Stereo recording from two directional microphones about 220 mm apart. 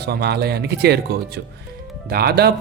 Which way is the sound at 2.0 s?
45° right (ahead or behind).